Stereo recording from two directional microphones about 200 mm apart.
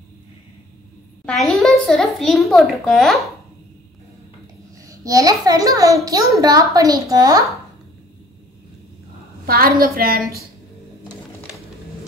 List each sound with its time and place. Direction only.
1.2 s a child's voice: 5° left (ahead or behind)
4.8 s a child's voice: 15° right (ahead or behind)
9.5 s a woman's voice: 50° right (ahead or behind)